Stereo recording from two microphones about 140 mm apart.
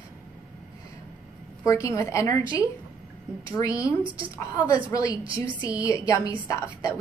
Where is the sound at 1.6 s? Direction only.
20° left (ahead or behind).